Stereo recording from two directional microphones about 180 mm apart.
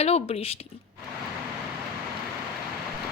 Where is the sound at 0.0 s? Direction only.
35° left (ahead or behind).